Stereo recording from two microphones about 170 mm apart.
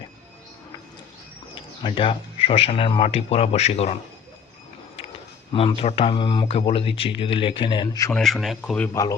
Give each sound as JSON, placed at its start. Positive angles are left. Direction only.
{"t": 1.8, "sound": "speech", "side_deg": 30}
{"t": 5.5, "sound": "speech", "side_deg": 30}
{"t": 8.1, "sound": "speech", "side_deg": 0}
{"t": 8.9, "sound": "speech", "side_deg": 20}